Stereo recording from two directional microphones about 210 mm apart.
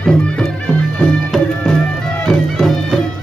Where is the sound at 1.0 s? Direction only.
5° left (ahead or behind).